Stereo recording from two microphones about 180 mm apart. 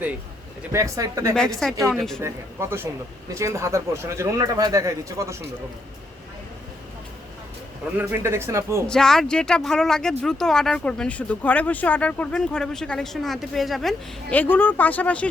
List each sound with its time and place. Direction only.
0.7 s speech: 20° right (ahead or behind)
1.4 s speech: centre (ahead or behind)
2.2 s speech: 15° right (ahead or behind)
7.9 s speech: 10° right (ahead or behind)
8.9 s speech: 5° left (ahead or behind)